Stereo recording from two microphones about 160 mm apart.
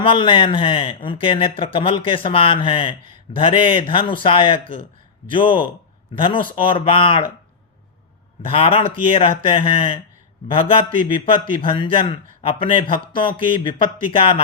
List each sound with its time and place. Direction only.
0.0 s speech: 30° left (ahead or behind)
8.4 s speech: 35° left (ahead or behind)